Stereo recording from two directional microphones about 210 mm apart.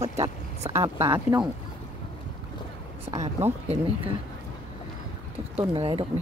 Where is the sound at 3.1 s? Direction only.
15° right (ahead or behind).